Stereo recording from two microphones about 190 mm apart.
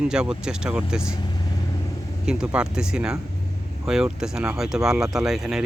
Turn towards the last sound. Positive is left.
turn(degrees=0)  # may be behind; listen again after turning